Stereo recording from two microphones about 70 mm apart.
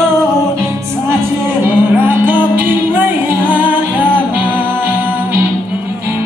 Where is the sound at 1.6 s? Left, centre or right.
Right.